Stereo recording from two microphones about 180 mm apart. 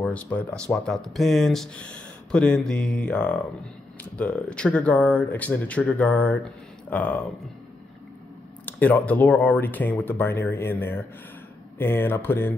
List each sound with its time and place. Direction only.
0.1 s speech: 5° left (ahead or behind)
8.6 s speech: 10° left (ahead or behind)